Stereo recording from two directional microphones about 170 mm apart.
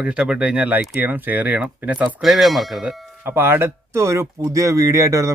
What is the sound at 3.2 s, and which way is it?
A man's voice, 10° right (ahead or behind).